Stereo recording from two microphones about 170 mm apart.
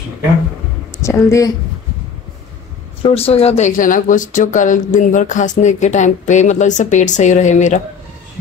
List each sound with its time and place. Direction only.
1.0 s a woman's voice: 15° left (ahead or behind)
3.0 s speech: 35° left (ahead or behind)